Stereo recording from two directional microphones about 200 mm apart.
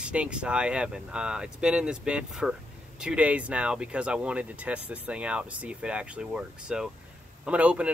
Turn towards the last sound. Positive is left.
turn(degrees=-5)  # may be behind; listen again after turning